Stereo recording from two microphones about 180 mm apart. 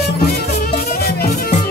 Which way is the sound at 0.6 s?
60° left (ahead or behind).